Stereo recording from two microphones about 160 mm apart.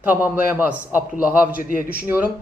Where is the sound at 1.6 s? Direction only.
60° left (ahead or behind).